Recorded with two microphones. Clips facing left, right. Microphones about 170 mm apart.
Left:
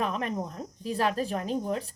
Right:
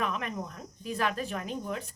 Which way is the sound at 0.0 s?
35° left (ahead or behind).